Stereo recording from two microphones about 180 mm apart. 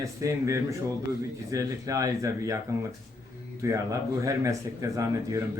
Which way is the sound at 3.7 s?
15° right (ahead or behind).